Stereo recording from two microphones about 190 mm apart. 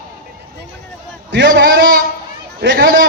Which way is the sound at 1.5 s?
65° right (ahead or behind).